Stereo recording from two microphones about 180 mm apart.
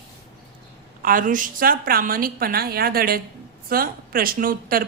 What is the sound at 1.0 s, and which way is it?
A woman's voice, 50° right (ahead or behind).